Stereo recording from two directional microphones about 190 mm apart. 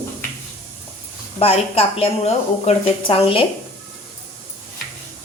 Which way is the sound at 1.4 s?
30° left (ahead or behind).